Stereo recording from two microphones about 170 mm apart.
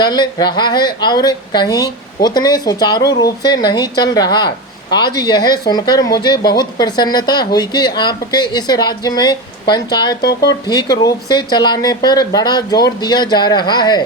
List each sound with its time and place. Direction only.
0.0 s speech: 25° left (ahead or behind)
10.2 s speech: 75° left (ahead or behind)
10.7 s speech: 25° left (ahead or behind)